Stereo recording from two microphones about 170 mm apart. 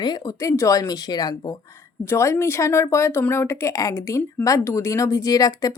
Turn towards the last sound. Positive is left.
turn(degrees=20)  # may be behind; listen again after turning